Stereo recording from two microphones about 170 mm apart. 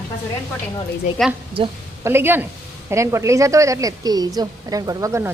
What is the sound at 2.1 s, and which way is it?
A woman's voice, 15° right (ahead or behind).